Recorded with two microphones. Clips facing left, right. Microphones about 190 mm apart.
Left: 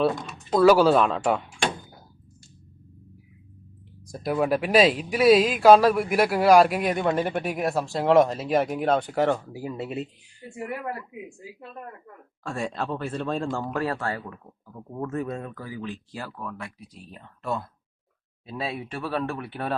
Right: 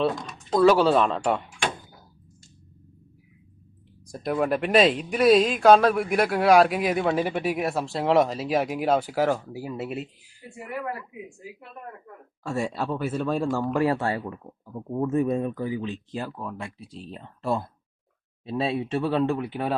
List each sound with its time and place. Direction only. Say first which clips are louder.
0.0 s speech: left 1 dB; 5° left (ahead or behind)
4.0 s speech: even; centre (ahead or behind)
12.4 s speech: right 2 dB; 10° right (ahead or behind)
13.7 s speech: right 6 dB; 20° right (ahead or behind)